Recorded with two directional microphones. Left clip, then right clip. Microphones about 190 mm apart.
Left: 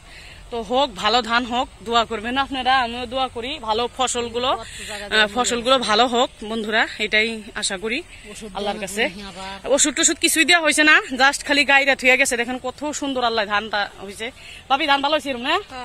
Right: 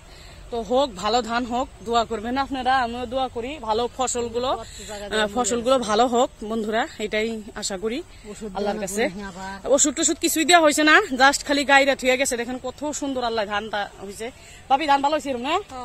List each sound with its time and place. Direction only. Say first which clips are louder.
0.5 s speech: left 1 dB; centre (ahead or behind)
8.5 s speech: left 1 dB; 25° right (ahead or behind)
9.7 s speech: left 2 dB; 10° right (ahead or behind); by 15.6 s 10° left (ahead or behind)